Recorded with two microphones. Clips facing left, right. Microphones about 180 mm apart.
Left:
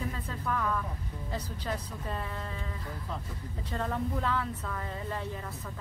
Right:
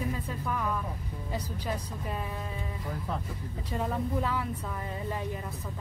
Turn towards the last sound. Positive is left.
turn(degrees=-15)  # may be behind; listen again after turning